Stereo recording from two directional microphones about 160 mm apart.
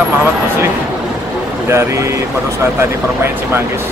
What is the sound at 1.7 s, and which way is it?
Speech, 15° right (ahead or behind).